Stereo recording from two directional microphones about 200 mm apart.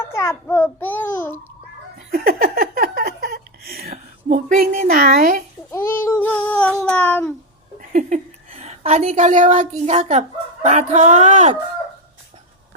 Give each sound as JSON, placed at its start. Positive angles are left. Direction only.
{"t": 0.0, "sound": "babbling", "side_deg": 10}
{"t": 2.1, "sound": "a sound", "side_deg": -45}
{"t": 3.9, "sound": "a sound", "side_deg": -30}
{"t": 4.5, "sound": "speech", "side_deg": -45}
{"t": 5.7, "sound": "child singing", "side_deg": 10}
{"t": 7.8, "sound": "a woman's voice", "side_deg": -35}